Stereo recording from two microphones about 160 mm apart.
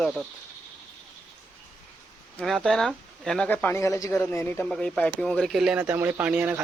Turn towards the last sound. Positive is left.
turn(degrees=-10)  # may be behind; listen again after turning